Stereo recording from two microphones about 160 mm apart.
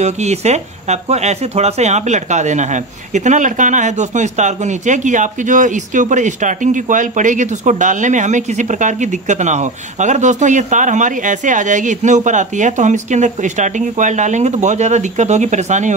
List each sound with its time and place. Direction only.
0.0 s speech: 45° right (ahead or behind)